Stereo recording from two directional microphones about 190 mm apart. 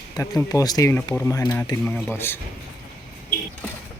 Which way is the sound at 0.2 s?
15° left (ahead or behind).